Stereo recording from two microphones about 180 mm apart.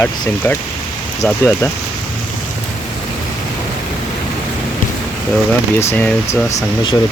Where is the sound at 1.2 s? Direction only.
15° left (ahead or behind).